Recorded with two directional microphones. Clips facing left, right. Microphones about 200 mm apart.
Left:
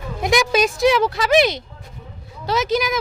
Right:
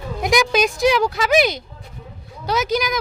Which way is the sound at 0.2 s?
Centre (ahead or behind).